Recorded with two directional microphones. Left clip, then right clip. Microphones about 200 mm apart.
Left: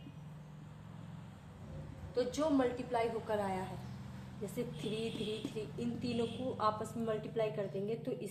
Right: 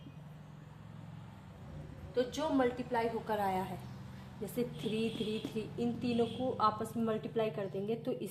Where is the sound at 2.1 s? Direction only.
30° right (ahead or behind).